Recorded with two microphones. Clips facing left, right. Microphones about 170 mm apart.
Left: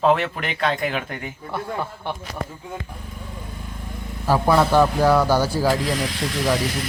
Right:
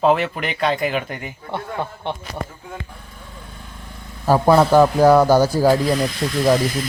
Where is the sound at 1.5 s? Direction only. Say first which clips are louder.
Right 1 dB; 20° right (ahead or behind).